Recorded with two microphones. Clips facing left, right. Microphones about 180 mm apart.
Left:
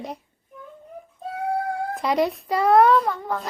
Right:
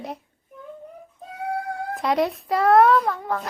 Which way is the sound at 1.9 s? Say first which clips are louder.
Right 1 dB; centre (ahead or behind).